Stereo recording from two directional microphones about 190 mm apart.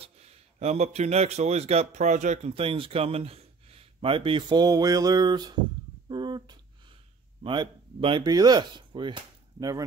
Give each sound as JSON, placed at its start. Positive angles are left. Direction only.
{"t": 0.0, "sound": "speech", "side_deg": -35}